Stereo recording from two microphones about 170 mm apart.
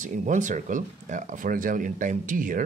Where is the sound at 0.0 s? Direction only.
50° right (ahead or behind).